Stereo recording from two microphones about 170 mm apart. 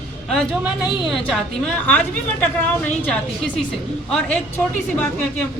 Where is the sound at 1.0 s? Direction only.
5° left (ahead or behind).